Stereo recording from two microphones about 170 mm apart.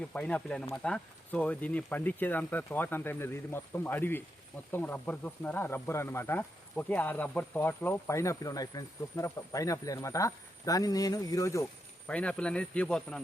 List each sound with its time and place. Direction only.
0.1 s speech: 5° left (ahead or behind)
12.0 s speech: 5° left (ahead or behind)